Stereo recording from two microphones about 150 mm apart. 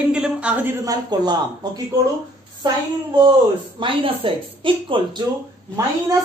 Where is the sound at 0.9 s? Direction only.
30° right (ahead or behind).